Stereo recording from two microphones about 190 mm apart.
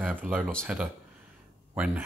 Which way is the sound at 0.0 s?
10° right (ahead or behind).